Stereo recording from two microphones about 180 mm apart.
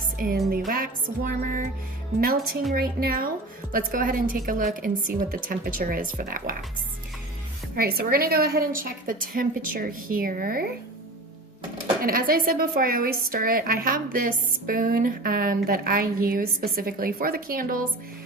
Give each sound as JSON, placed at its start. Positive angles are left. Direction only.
{"t": 0.2, "sound": "a woman's voice", "side_deg": -55}
{"t": 7.8, "sound": "a woman's voice", "side_deg": -55}
{"t": 12.0, "sound": "a woman's voice", "side_deg": -55}